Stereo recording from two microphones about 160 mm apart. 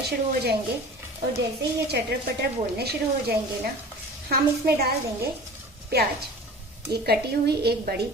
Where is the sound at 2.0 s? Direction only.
90° right.